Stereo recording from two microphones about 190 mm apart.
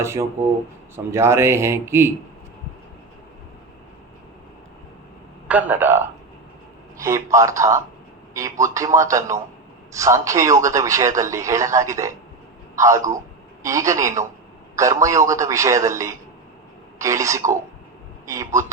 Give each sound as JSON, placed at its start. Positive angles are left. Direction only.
{"t": 0.0, "sound": "a man's voice", "side_deg": -15}
{"t": 5.5, "sound": "a man's voice", "side_deg": -10}